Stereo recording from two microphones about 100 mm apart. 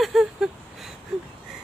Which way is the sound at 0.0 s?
5° right (ahead or behind).